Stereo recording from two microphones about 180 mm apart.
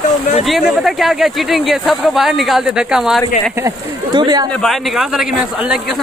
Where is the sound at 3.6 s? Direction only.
25° right (ahead or behind).